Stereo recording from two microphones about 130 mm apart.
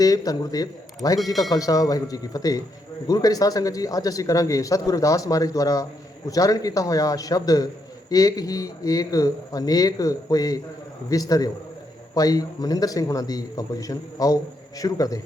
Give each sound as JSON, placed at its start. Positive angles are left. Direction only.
{"t": 0.0, "sound": "speech", "side_deg": 30}
{"t": 1.2, "sound": "speech", "side_deg": 0}
{"t": 1.5, "sound": "speech", "side_deg": 25}